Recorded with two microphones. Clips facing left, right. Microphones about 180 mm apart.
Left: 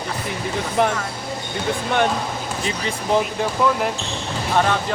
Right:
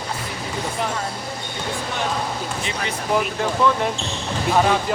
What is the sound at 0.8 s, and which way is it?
Speech, 65° left (ahead or behind).